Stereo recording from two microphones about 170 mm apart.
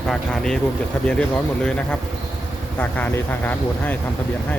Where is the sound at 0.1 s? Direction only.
5° left (ahead or behind).